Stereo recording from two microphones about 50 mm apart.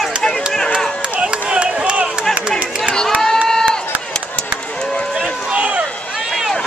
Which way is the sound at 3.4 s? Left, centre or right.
Centre.